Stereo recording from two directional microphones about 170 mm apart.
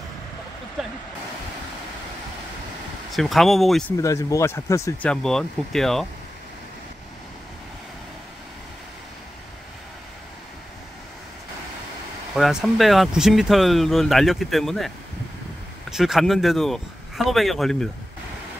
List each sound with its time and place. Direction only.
0.8 s a sound: centre (ahead or behind)
3.1 s speech: centre (ahead or behind)
3.9 s speech: 20° left (ahead or behind)
5.0 s speech: 5° left (ahead or behind)
12.4 s speech: centre (ahead or behind)
15.9 s speech: centre (ahead or behind)